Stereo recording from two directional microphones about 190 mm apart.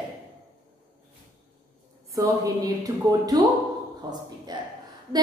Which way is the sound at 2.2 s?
20° right (ahead or behind).